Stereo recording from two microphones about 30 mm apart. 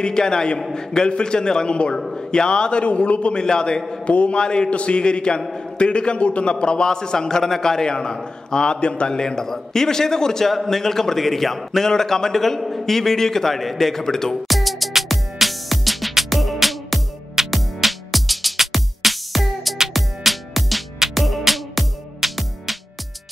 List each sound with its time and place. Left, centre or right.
0.0 s a man's voice: left
2.8 s a man's voice: left
3.3 s a man's voice: left
4.0 s a man's voice: left
4.4 s a man's voice: left
4.6 s a man's voice: left
6.4 s a man's voice: left
8.7 s a man's voice: left; by 14.3 s centre
14.3 s music: centre
17.4 s music: centre
17.7 s music: centre